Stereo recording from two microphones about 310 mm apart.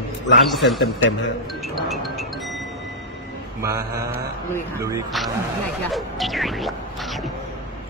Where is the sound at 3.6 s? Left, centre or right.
Centre.